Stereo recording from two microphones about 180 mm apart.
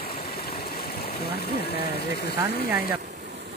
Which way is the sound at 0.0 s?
55° left (ahead or behind).